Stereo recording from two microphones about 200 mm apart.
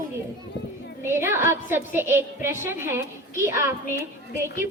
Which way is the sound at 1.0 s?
10° right (ahead or behind).